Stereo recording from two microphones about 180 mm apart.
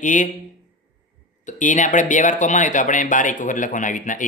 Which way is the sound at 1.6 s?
45° left (ahead or behind).